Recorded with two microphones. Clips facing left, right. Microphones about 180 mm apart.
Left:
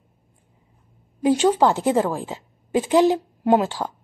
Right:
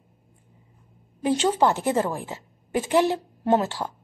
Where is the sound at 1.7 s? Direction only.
15° left (ahead or behind).